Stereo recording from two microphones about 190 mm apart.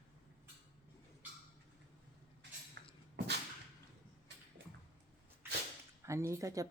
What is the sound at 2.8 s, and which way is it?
Beatboxing, 60° right (ahead or behind).